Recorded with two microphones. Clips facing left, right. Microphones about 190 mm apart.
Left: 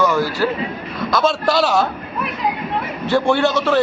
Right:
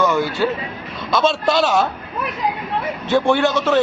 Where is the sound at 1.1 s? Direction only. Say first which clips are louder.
Even; 25° right (ahead or behind).